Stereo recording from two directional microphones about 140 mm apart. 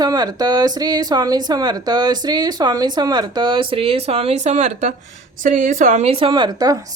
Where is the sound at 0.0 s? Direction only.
30° right (ahead or behind); by 4.9 s 55° right (ahead or behind).